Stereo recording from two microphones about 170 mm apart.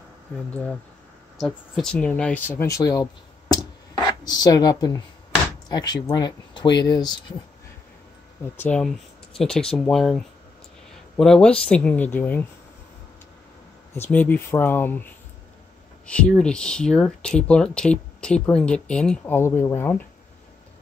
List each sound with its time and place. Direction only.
1.4 s speech: 5° left (ahead or behind); by 7.3 s 25° left (ahead or behind)
8.5 s speech: 5° left (ahead or behind)
13.9 s speech: 10° left (ahead or behind)
16.1 s speech: 5° left (ahead or behind)